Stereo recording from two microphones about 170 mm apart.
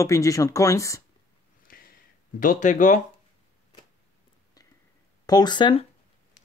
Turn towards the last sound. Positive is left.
turn(degrees=25)  # may be behind; listen again after turning